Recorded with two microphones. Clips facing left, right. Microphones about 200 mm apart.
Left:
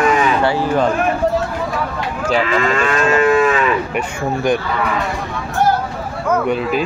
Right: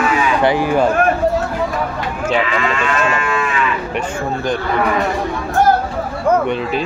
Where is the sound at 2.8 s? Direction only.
40° left (ahead or behind).